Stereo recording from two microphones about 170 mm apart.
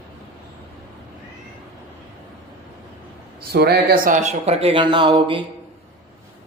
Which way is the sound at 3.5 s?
65° right (ahead or behind).